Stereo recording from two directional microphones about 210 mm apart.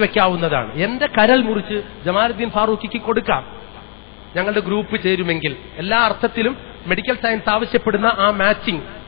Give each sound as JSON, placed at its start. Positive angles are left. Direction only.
{"t": 0.0, "sound": "a man's voice", "side_deg": 20}
{"t": 4.4, "sound": "a man's voice", "side_deg": 15}